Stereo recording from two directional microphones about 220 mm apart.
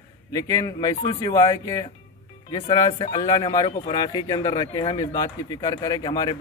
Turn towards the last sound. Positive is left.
turn(degrees=20)  # may be behind; listen again after turning